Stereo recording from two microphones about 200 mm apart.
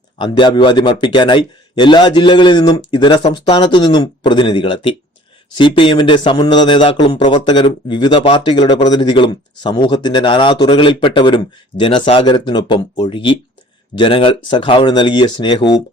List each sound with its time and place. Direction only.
0.2 s a man's voice: 25° left (ahead or behind)